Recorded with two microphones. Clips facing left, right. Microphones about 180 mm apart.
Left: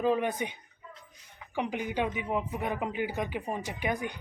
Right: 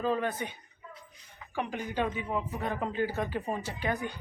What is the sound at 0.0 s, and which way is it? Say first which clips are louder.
Speech: left 3 dB; 15° left (ahead or behind).